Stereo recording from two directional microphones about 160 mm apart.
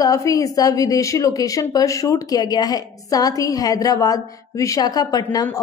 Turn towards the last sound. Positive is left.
turn(degrees=25)  # may be behind; listen again after turning